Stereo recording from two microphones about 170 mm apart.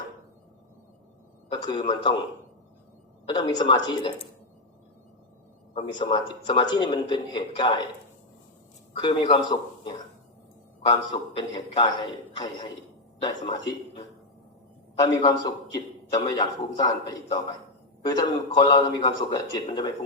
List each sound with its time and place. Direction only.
1.5 s a man's voice: 25° left (ahead or behind)
3.2 s a man's voice: 25° left (ahead or behind)
5.7 s a man's voice: 25° left (ahead or behind)
9.0 s a man's voice: 25° left (ahead or behind)
13.2 s a man's voice: 25° left (ahead or behind)